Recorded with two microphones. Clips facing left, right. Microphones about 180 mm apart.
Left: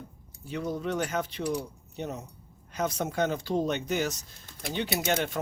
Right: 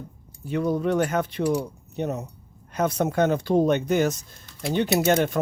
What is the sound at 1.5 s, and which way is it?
Speech, 75° right (ahead or behind).